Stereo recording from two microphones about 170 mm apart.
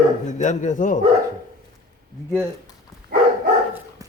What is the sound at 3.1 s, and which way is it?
Dog, 60° right (ahead or behind).